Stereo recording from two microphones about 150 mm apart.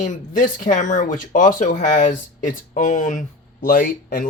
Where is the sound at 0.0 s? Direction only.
60° left (ahead or behind).